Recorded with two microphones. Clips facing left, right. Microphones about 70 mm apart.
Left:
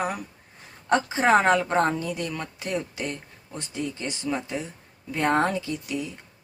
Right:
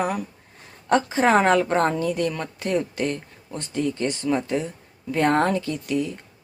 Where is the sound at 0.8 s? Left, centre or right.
Centre.